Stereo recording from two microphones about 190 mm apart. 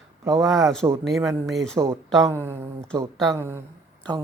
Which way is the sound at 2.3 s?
10° right (ahead or behind).